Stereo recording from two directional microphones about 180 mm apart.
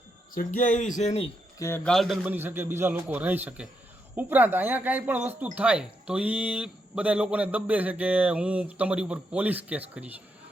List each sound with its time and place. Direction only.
0.3 s speech: 45° left (ahead or behind)
1.5 s speech: 15° left (ahead or behind)
1.8 s a man's voice: centre (ahead or behind)
2.3 s speech: 10° right (ahead or behind)